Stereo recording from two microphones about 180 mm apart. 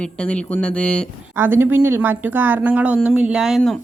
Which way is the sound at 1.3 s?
10° right (ahead or behind).